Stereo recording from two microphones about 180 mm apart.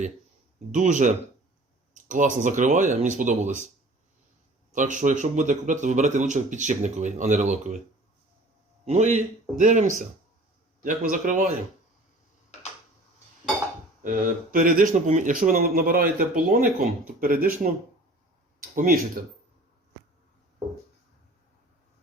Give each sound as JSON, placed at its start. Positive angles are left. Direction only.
{"t": 0.7, "sound": "speech", "side_deg": -45}
{"t": 4.7, "sound": "speech", "side_deg": -45}
{"t": 8.8, "sound": "speech", "side_deg": -40}
{"t": 14.0, "sound": "speech", "side_deg": -50}
{"t": 18.7, "sound": "speech", "side_deg": -45}